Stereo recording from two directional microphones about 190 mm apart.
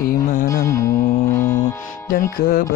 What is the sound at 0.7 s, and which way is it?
Mantra, 15° left (ahead or behind).